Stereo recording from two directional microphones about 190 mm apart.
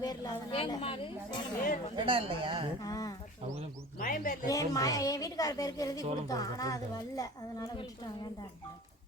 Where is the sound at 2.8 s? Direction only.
20° left (ahead or behind).